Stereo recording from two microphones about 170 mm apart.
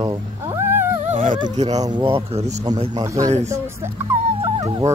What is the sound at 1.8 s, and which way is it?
Speech, 30° right (ahead or behind).